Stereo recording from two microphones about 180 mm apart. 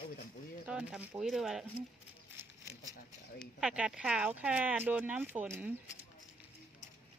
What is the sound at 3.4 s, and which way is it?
Speech, 5° right (ahead or behind).